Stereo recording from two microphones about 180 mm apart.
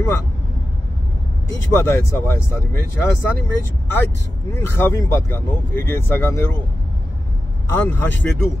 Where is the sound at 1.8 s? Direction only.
15° left (ahead or behind).